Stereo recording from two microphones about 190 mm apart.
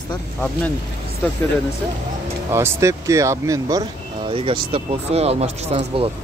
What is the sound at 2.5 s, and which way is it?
Speech, 15° right (ahead or behind).